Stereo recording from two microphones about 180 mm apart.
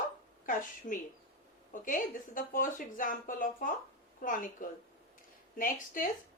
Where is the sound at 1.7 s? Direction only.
45° left (ahead or behind).